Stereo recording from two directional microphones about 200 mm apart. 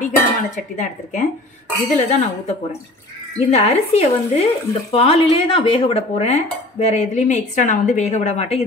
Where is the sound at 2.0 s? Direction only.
35° left (ahead or behind).